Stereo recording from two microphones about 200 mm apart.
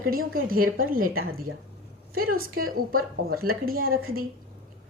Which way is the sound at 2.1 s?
45° right (ahead or behind).